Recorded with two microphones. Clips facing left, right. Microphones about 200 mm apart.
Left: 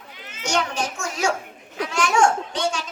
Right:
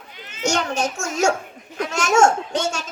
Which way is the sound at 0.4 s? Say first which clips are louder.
Right 3 dB; 40° right (ahead or behind).